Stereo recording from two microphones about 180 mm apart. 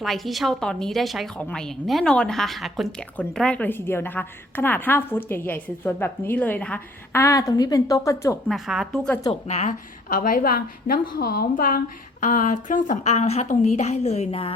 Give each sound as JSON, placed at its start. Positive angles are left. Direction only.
{"t": 0.0, "sound": "a woman's voice", "side_deg": 0}
{"t": 8.4, "sound": "a woman's voice", "side_deg": 0}
{"t": 9.3, "sound": "a woman's voice", "side_deg": 40}